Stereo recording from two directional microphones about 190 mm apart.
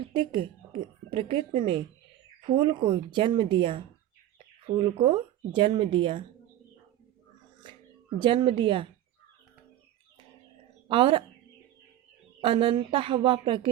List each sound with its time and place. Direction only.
0.0 s a woman's voice: 25° right (ahead or behind)
8.2 s speech: 25° right (ahead or behind)
10.8 s a woman's voice: 25° right (ahead or behind)
12.4 s speech: 25° right (ahead or behind)